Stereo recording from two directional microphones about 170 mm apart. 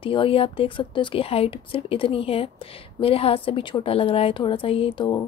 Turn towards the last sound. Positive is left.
turn(degrees=30)  # may be behind; listen again after turning